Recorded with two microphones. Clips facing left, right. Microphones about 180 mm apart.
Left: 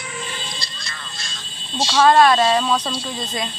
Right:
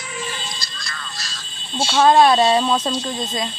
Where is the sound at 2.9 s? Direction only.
5° left (ahead or behind).